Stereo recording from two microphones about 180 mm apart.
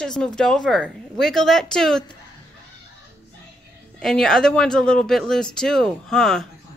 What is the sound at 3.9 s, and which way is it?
A woman's voice, 5° left (ahead or behind).